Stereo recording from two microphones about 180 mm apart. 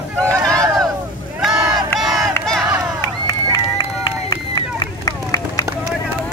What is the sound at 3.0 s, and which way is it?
Run, 20° left (ahead or behind).